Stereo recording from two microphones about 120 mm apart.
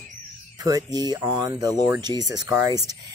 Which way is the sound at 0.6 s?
30° right (ahead or behind).